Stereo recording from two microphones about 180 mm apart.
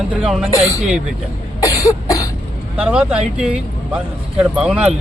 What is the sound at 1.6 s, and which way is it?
Cough, 20° left (ahead or behind).